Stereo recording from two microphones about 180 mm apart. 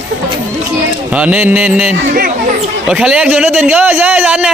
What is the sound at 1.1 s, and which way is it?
A man's voice, 10° right (ahead or behind).